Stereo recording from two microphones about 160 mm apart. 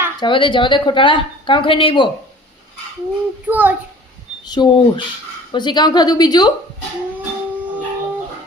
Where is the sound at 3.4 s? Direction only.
10° right (ahead or behind).